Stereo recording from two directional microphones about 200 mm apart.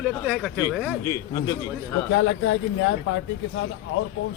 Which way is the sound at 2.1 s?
75° left (ahead or behind).